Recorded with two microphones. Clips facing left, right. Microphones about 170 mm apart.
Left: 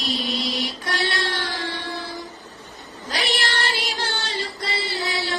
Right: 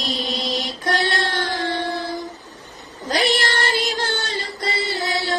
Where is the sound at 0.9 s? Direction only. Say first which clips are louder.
Right 5 dB; 50° right (ahead or behind).